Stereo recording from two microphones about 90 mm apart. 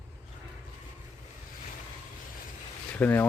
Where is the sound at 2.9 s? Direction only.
20° left (ahead or behind).